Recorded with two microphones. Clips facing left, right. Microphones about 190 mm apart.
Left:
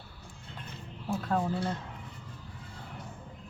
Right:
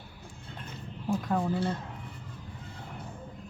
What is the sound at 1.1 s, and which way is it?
Speech, 15° right (ahead or behind).